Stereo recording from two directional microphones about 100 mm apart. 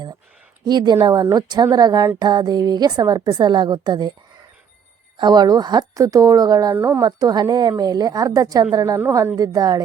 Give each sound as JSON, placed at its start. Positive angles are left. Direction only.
{"t": 0.6, "sound": "a woman's voice", "side_deg": -45}
{"t": 5.1, "sound": "a woman's voice", "side_deg": -50}
{"t": 6.7, "sound": "a woman's voice", "side_deg": -25}
{"t": 7.0, "sound": "a woman's voice", "side_deg": -40}